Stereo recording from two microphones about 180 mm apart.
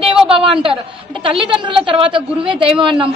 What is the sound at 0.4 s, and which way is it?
A woman's voice, 30° right (ahead or behind).